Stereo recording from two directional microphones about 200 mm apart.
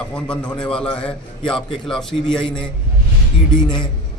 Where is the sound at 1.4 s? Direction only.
25° left (ahead or behind).